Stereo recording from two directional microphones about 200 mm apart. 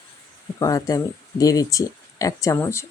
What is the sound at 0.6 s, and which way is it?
Speech, 20° left (ahead or behind).